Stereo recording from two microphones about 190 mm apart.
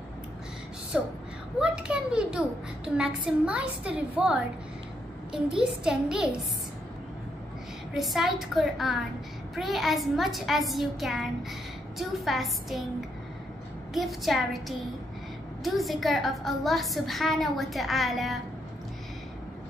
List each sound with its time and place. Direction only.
0.9 s a woman's voice: 5° right (ahead or behind)
7.9 s a woman's voice: centre (ahead or behind)
13.9 s a woman's voice: centre (ahead or behind)